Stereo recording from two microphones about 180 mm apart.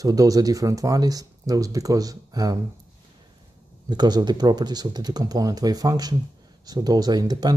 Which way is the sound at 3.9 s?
20° right (ahead or behind).